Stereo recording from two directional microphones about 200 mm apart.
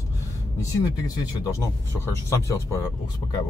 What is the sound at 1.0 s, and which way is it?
A man's voice, 20° left (ahead or behind).